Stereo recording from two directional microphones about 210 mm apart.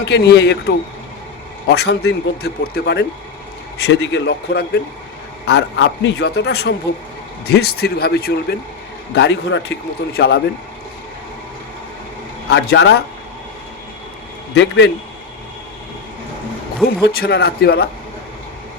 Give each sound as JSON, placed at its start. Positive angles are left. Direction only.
{"t": 0.0, "sound": "a man's voice", "side_deg": 55}
{"t": 1.7, "sound": "a man's voice", "side_deg": 50}
{"t": 12.5, "sound": "a man's voice", "side_deg": 55}
{"t": 14.5, "sound": "a man's voice", "side_deg": 55}
{"t": 16.8, "sound": "a man's voice", "side_deg": 45}